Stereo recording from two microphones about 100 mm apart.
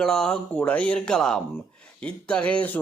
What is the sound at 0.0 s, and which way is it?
Speech, 5° left (ahead or behind).